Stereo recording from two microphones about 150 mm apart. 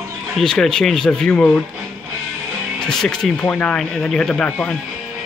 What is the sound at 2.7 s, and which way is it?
Speech, 5° left (ahead or behind).